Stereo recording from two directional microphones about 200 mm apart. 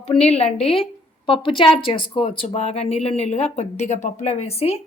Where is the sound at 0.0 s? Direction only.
30° left (ahead or behind).